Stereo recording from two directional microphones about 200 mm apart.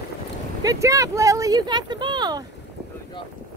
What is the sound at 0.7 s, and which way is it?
Speech, 15° right (ahead or behind).